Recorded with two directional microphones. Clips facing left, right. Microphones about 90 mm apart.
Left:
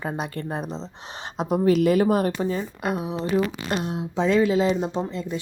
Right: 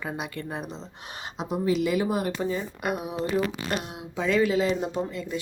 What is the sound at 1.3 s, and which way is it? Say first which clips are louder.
Speech: left 6 dB; 50° left (ahead or behind).